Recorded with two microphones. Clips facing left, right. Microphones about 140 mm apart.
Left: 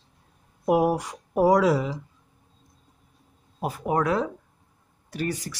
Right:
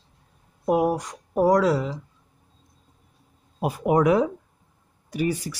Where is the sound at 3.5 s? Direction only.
15° right (ahead or behind).